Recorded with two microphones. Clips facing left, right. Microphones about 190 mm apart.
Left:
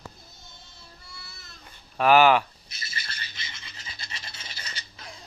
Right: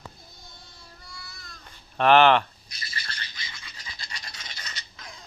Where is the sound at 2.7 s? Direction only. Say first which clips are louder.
Right 1 dB; 25° left (ahead or behind).